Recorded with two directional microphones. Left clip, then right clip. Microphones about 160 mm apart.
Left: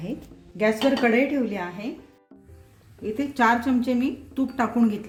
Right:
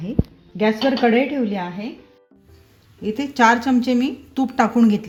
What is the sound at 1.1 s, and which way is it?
Speech, 40° right (ahead or behind).